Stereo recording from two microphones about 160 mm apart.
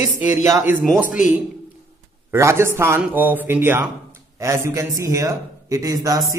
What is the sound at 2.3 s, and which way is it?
A man's voice, 15° right (ahead or behind).